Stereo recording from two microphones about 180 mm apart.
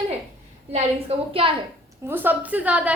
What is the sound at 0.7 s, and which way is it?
Speech, 35° right (ahead or behind).